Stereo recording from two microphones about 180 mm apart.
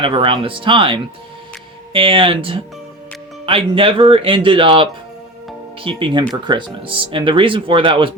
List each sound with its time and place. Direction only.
0.0 s speech: 30° right (ahead or behind)